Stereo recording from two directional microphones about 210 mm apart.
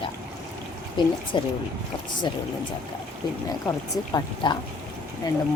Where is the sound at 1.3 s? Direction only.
20° left (ahead or behind).